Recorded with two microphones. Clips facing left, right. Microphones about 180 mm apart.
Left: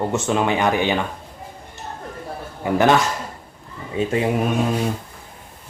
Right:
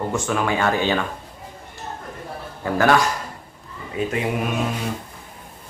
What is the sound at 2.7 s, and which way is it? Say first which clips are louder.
A man's voice: left 1 dB; 20° left (ahead or behind).